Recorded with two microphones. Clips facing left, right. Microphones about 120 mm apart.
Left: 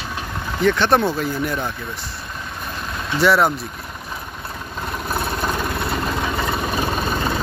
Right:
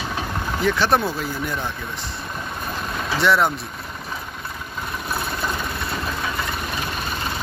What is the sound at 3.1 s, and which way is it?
Speech, 5° left (ahead or behind).